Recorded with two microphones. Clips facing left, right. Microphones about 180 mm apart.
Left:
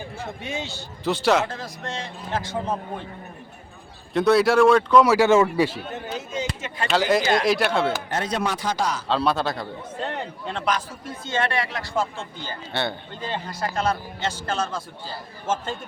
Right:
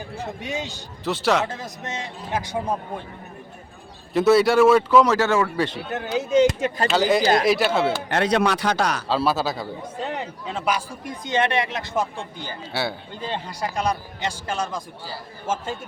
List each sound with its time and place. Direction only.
0.3 s a man's voice: 15° right (ahead or behind)
1.0 s speech: centre (ahead or behind)
1.5 s a man's voice: 20° right (ahead or behind)
4.1 s speech: centre (ahead or behind)
5.0 s speech: 10° left (ahead or behind)
5.9 s a man's voice: 75° right (ahead or behind)
6.5 s speech: 45° right (ahead or behind)
6.8 s speech: centre (ahead or behind)
8.1 s a man's voice: 70° right (ahead or behind)
9.0 s a man's voice: 5° right (ahead or behind)